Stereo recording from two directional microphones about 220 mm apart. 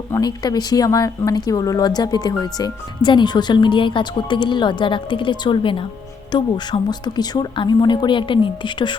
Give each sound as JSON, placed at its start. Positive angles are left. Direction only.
{"t": 0.1, "sound": "speech", "side_deg": 20}